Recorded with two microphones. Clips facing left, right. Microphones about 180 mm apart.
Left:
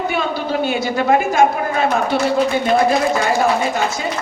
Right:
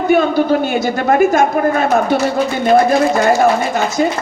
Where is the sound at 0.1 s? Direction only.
45° right (ahead or behind).